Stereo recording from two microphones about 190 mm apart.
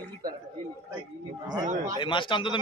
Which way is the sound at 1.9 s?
25° left (ahead or behind).